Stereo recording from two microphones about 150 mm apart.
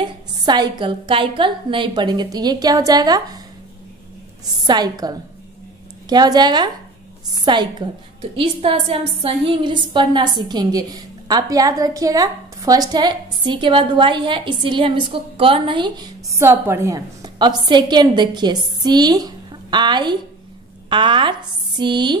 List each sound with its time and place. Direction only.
0.0 s a woman's voice: 30° right (ahead or behind)
4.6 s a woman's voice: 25° right (ahead or behind)